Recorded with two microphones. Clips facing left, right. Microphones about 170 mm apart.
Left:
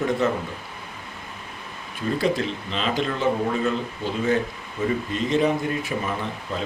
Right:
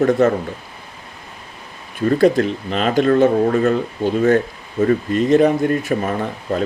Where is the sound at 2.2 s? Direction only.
50° right (ahead or behind).